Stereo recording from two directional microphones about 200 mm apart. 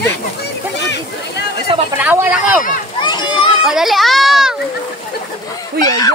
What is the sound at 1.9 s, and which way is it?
Speech, 10° right (ahead or behind).